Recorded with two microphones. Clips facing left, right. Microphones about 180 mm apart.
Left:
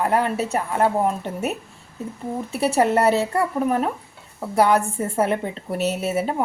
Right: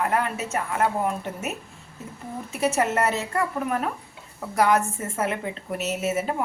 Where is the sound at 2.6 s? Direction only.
35° left (ahead or behind).